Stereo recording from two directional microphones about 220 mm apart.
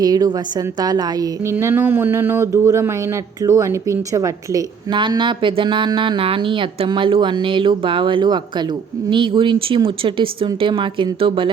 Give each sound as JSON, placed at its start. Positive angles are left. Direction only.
{"t": 0.0, "sound": "a woman's voice", "side_deg": -20}